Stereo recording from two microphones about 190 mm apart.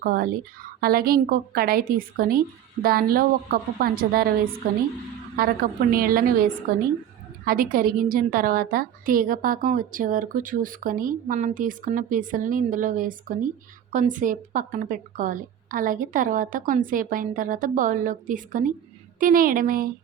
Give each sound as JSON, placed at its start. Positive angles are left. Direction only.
{"t": 0.0, "sound": "a woman's voice", "side_deg": -50}
{"t": 5.4, "sound": "a woman's voice", "side_deg": -50}
{"t": 7.4, "sound": "a woman's voice", "side_deg": -50}